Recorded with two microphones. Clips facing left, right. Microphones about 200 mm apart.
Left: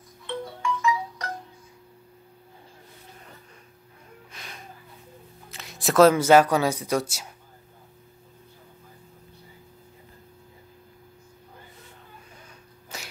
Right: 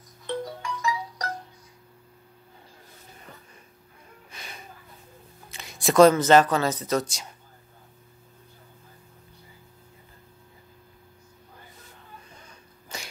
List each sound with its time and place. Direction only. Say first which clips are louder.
0.3 s music: left 1 dB; 35° right (ahead or behind)
4.3 s music: right 1 dB; centre (ahead or behind)
5.5 s speech: right 1 dB; centre (ahead or behind)
12.9 s a sound: right 1 dB; 5° left (ahead or behind)